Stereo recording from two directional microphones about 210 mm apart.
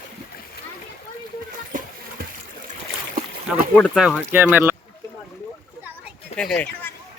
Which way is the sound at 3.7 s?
5° left (ahead or behind).